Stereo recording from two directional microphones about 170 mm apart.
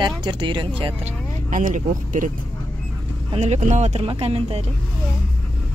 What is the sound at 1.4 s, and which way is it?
Speech, 50° right (ahead or behind).